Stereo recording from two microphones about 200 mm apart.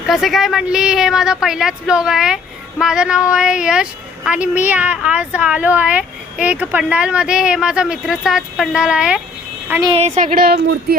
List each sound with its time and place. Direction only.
0.1 s a woman's voice: centre (ahead or behind)
9.9 s a woman's voice: 35° right (ahead or behind)